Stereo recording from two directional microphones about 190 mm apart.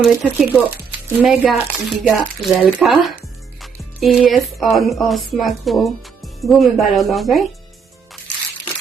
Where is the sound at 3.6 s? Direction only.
Centre (ahead or behind).